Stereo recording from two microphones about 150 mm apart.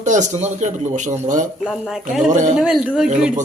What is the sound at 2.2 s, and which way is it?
Speech, 55° right (ahead or behind).